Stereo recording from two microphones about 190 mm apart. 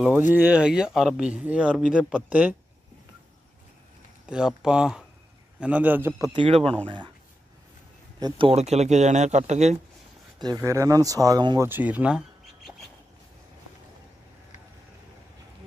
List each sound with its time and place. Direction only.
0.3 s speech: 10° right (ahead or behind)
4.3 s speech: 5° right (ahead or behind); by 6.7 s 30° right (ahead or behind)
8.2 s speech: 30° right (ahead or behind)
10.4 s speech: 15° right (ahead or behind)